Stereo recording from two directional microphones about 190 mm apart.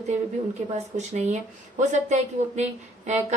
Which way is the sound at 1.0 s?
35° right (ahead or behind).